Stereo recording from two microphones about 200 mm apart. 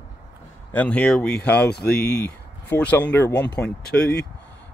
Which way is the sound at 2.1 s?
5° left (ahead or behind).